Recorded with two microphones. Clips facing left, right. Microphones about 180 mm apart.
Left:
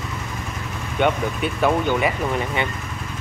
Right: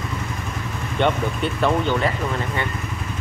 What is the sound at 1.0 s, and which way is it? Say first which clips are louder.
Speech: even; 10° left (ahead or behind).